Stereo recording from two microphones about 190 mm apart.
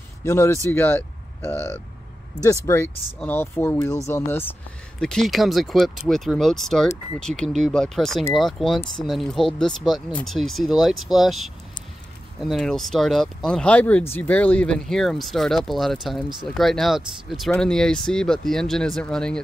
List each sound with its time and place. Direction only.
0.2 s speech: 15° left (ahead or behind)